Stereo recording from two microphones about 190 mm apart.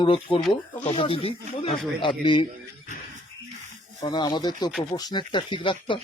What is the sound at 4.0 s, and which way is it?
Speech, 25° left (ahead or behind).